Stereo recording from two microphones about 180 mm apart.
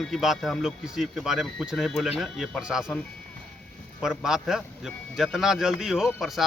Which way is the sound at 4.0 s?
5° right (ahead or behind).